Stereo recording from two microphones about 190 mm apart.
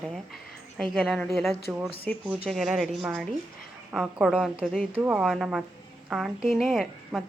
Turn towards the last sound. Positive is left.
turn(degrees=0)  # may be behind; listen again after turning